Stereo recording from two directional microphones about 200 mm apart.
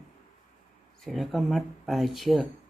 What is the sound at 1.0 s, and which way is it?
Speech, centre (ahead or behind).